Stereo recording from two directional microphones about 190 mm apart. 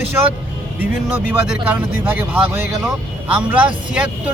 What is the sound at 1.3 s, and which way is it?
Speech, 10° right (ahead or behind).